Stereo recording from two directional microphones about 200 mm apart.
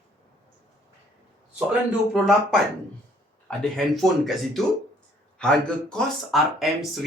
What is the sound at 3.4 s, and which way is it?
A man's voice, centre (ahead or behind).